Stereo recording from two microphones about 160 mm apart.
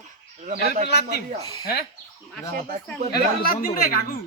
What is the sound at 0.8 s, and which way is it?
Speech, 90° left.